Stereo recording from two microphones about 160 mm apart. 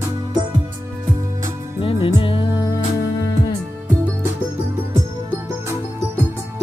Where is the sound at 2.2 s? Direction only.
35° left (ahead or behind).